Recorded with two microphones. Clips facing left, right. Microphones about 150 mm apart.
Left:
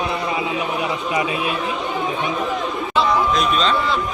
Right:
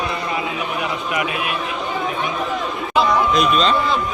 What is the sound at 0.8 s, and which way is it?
Speech, 30° left (ahead or behind).